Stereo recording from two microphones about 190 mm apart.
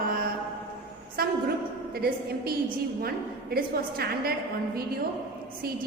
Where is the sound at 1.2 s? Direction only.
50° right (ahead or behind).